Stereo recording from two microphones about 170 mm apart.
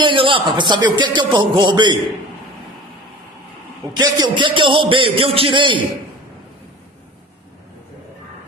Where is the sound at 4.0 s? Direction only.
25° right (ahead or behind).